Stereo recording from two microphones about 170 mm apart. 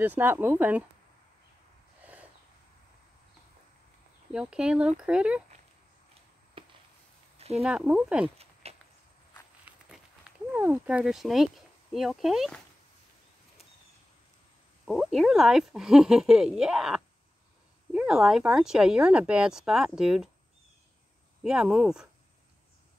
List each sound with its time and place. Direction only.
0.0 s speech: 10° right (ahead or behind)
4.3 s speech: 5° right (ahead or behind)
6.6 s a sound: 30° right (ahead or behind)
7.5 s speech: 5° right (ahead or behind)
8.6 s walk: 35° right (ahead or behind)
9.7 s walk: 5° right (ahead or behind)
10.5 s speech: 10° right (ahead or behind)
14.9 s speech: centre (ahead or behind)
21.4 s speech: 5° right (ahead or behind)